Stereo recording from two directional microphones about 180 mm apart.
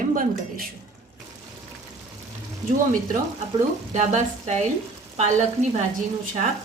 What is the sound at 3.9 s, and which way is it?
A woman's voice, 40° right (ahead or behind).